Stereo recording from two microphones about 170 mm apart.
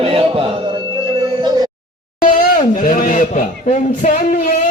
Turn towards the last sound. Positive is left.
turn(degrees=50)  # may be behind; listen again after turning